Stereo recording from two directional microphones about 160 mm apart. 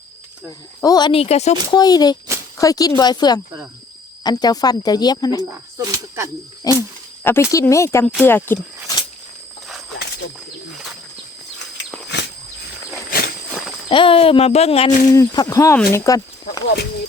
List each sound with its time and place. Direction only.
0.8 s speech: 25° left (ahead or behind)
1.2 s speech: 40° left (ahead or behind)
1.7 s speech: 25° left (ahead or behind)
5.4 s speech: 20° right (ahead or behind)
6.7 s speech: 25° left (ahead or behind)
12.1 s wild animals: 90° left
13.1 s walk: 70° left (ahead or behind)
13.9 s speech: 35° left (ahead or behind)
15.1 s speech: 20° left (ahead or behind)